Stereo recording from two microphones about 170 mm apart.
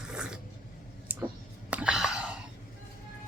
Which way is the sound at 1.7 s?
5° right (ahead or behind).